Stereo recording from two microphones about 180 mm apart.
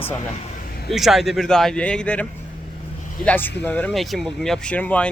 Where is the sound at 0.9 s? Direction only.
Centre (ahead or behind).